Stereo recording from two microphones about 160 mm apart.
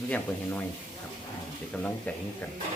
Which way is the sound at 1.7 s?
5° left (ahead or behind).